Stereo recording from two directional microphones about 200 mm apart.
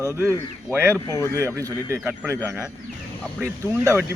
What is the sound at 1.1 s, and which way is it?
Speech, 15° left (ahead or behind).